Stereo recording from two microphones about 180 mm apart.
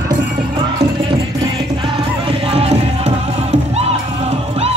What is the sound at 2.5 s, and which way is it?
Music, 35° right (ahead or behind).